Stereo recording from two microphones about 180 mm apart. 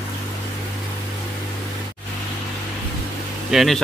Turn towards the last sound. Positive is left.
turn(degrees=0)  # may be behind; listen again after turning